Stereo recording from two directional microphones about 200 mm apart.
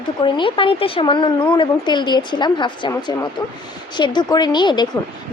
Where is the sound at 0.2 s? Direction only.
25° left (ahead or behind).